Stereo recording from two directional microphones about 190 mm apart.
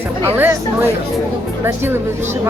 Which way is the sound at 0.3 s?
10° right (ahead or behind).